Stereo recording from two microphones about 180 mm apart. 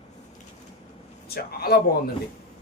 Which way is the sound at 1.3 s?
60° left (ahead or behind).